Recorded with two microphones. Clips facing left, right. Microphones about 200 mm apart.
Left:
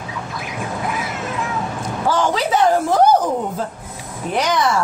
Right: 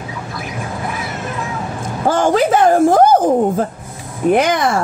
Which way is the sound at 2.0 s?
50° right (ahead or behind).